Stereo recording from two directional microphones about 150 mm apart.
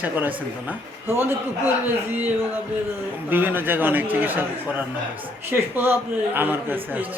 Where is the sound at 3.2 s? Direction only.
15° right (ahead or behind).